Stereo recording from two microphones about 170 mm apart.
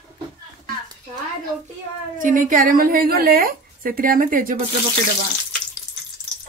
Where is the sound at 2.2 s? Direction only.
50° right (ahead or behind).